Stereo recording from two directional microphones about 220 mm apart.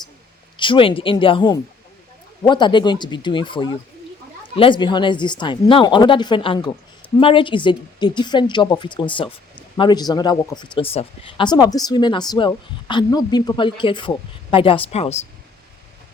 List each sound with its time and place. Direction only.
0.6 s a woman's voice: 25° left (ahead or behind)